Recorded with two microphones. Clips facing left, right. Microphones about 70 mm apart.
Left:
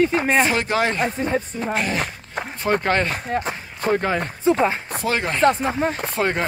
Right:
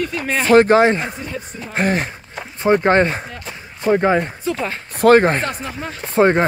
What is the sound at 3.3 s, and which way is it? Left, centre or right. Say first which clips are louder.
Speech: left 8 dB; left.